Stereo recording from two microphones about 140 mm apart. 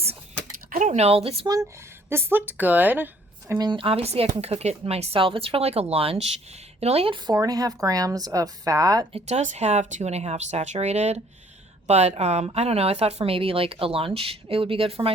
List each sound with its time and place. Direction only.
0.7 s speech: 60° right (ahead or behind); by 1.5 s 45° right (ahead or behind)
2.0 s speech: 15° right (ahead or behind)
3.6 s speech: 35° right (ahead or behind)
7.3 s a woman's voice: 25° right (ahead or behind)
9.1 s speech: 50° right (ahead or behind)